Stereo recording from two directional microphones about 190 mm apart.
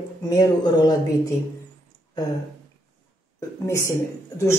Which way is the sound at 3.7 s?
15° left (ahead or behind).